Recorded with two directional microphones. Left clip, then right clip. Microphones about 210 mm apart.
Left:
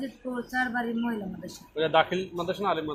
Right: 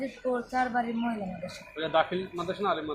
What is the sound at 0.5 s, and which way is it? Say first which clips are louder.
Speech: left 3 dB; centre (ahead or behind).